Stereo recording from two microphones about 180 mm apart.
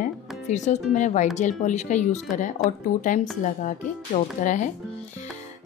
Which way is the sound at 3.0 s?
45° left (ahead or behind).